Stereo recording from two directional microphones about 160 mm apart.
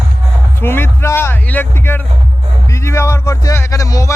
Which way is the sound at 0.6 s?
15° left (ahead or behind).